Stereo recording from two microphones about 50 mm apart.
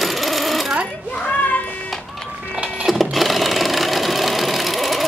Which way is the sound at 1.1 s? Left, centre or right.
Left.